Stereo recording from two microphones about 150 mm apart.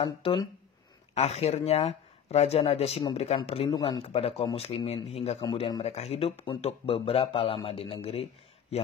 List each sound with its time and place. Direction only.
0.0 s speech: 35° left (ahead or behind)
1.1 s speech: 45° left (ahead or behind)
5.4 s speech: 30° left (ahead or behind)